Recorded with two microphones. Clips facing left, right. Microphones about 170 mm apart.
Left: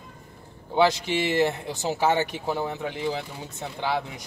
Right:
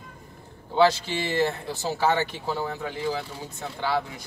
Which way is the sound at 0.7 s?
20° left (ahead or behind).